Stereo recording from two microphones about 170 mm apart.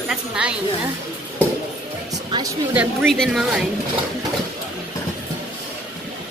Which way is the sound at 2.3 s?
25° right (ahead or behind).